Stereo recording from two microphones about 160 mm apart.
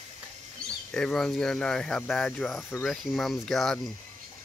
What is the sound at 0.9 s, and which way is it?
Speech, 5° left (ahead or behind).